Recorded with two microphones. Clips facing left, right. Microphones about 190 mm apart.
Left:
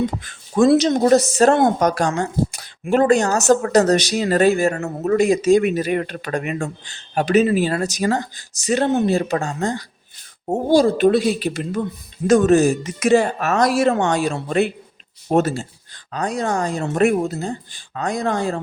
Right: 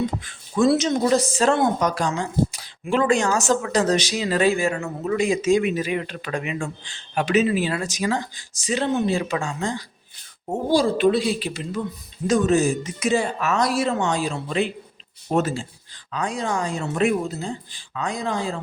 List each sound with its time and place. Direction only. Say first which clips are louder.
0.2 s speech: left 4 dB; 45° left (ahead or behind)
5.8 s speech: left 4 dB; 50° left (ahead or behind)
8.6 s speech: left 4 dB; 50° left (ahead or behind)